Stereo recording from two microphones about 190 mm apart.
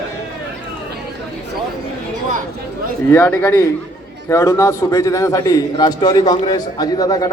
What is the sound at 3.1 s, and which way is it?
A man's voice, 10° left (ahead or behind).